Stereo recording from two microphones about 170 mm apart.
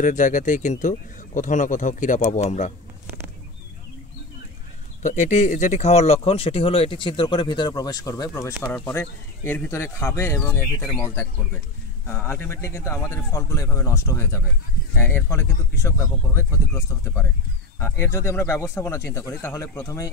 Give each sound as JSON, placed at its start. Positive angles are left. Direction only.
{"t": 0.0, "sound": "speech", "side_deg": 50}
{"t": 5.0, "sound": "speech", "side_deg": 45}